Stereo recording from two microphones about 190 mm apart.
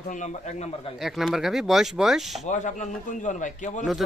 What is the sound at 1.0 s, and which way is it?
Speech, centre (ahead or behind).